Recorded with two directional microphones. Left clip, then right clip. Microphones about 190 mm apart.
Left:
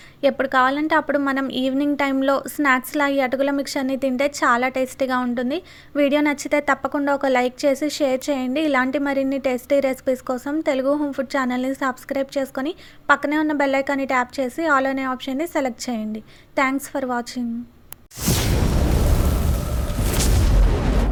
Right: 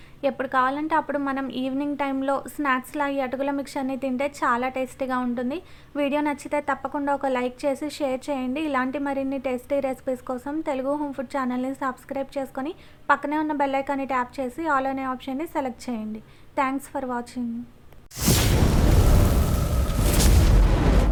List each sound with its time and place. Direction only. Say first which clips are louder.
0.2 s a woman's voice: left 5 dB; 20° left (ahead or behind)
18.2 s boom: even; centre (ahead or behind)